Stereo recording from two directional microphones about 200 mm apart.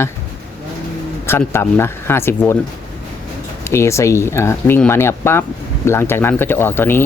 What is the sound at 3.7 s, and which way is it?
Speech, 15° left (ahead or behind).